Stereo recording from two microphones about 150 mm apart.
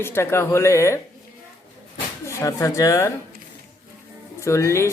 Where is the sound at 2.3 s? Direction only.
20° left (ahead or behind).